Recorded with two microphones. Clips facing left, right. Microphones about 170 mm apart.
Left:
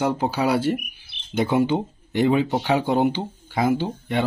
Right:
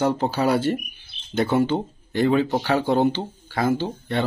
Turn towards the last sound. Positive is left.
turn(degrees=15)  # may be behind; listen again after turning